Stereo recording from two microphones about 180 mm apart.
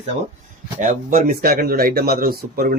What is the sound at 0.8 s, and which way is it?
Speech, 45° right (ahead or behind).